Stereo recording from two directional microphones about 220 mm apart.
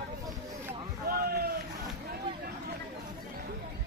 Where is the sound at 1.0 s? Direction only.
45° right (ahead or behind).